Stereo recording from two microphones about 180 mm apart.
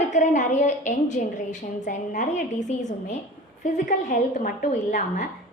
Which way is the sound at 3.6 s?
45° left (ahead or behind).